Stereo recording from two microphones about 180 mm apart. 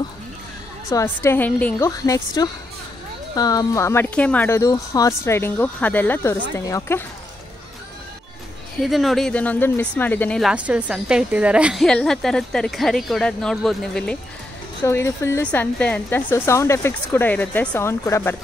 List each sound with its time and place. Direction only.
0.8 s a woman's voice: 15° left (ahead or behind)
8.8 s a woman's voice: centre (ahead or behind)
10.4 s a woman's voice: 5° right (ahead or behind)
14.9 s a woman's voice: 15° left (ahead or behind)